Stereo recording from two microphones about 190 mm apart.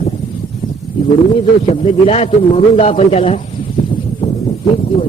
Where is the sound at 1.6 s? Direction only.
35° left (ahead or behind).